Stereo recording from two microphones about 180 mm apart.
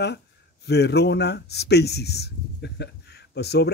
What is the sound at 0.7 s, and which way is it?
Speech, 65° left (ahead or behind).